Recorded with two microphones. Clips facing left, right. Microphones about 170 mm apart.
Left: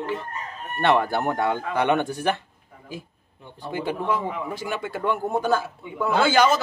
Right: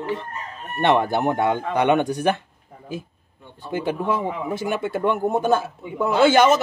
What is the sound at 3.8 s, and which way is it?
A man's voice, 20° right (ahead or behind).